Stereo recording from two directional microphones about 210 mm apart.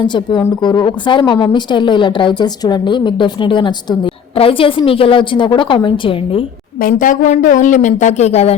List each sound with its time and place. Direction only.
0.0 s a woman's voice: 20° left (ahead or behind)
6.8 s speech: 40° left (ahead or behind)